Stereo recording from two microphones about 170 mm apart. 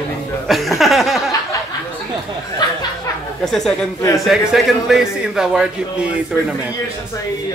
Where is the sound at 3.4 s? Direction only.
5° left (ahead or behind).